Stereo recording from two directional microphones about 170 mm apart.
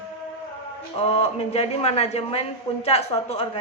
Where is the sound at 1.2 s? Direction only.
35° left (ahead or behind).